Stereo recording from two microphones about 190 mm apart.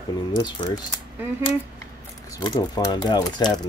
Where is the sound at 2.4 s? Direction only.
20° left (ahead or behind).